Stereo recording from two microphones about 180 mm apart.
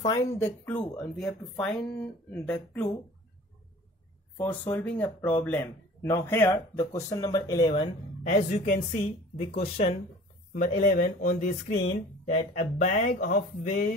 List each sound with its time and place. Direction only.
0.0 s speech: 20° left (ahead or behind)
4.4 s speech: 10° left (ahead or behind)
8.3 s speech: 35° left (ahead or behind)
10.5 s speech: 50° left (ahead or behind)
12.5 s speech: 45° left (ahead or behind)